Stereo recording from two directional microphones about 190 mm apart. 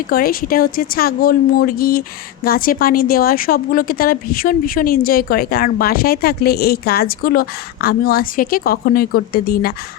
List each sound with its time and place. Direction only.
0.1 s a woman's voice: 50° left (ahead or behind)